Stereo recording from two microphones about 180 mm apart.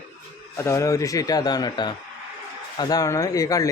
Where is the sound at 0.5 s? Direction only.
15° left (ahead or behind).